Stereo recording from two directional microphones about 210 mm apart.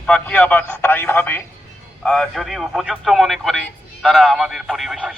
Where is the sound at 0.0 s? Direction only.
5° left (ahead or behind).